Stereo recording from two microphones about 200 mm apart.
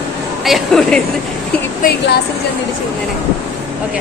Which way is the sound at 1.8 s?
45° left (ahead or behind).